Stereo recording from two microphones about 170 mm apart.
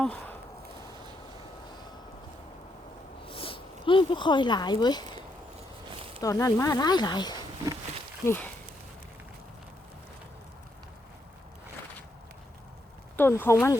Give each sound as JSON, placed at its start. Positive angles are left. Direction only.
{"t": 0.0, "sound": "speech", "side_deg": 10}
{"t": 3.2, "sound": "a sound", "side_deg": 30}
{"t": 6.2, "sound": "speech", "side_deg": 20}
{"t": 8.2, "sound": "speech", "side_deg": 15}
{"t": 13.1, "sound": "speech", "side_deg": 10}